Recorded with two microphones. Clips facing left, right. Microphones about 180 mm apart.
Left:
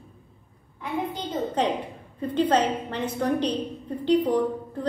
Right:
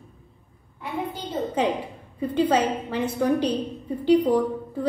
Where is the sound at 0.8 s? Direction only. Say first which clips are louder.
Left 1 dB; 10° right (ahead or behind).